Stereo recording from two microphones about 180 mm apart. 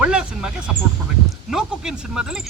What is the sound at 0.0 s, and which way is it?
Speech, 5° right (ahead or behind).